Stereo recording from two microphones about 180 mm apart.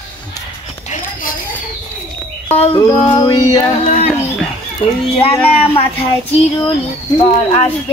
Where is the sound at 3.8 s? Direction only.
45° left (ahead or behind).